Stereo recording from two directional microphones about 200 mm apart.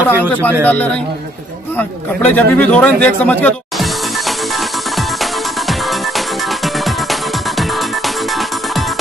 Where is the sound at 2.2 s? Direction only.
10° left (ahead or behind).